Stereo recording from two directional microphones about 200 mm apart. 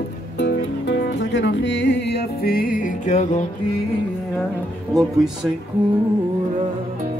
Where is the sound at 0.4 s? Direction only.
60° left (ahead or behind); by 3.4 s 35° left (ahead or behind).